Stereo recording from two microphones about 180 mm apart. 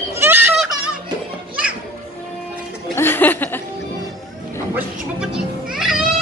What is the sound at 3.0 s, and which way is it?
Speech, 10° left (ahead or behind).